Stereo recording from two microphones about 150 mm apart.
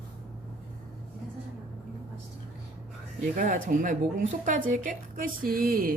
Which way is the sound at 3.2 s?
60° right (ahead or behind).